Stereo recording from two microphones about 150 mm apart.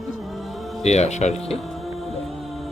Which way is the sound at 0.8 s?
45° left (ahead or behind).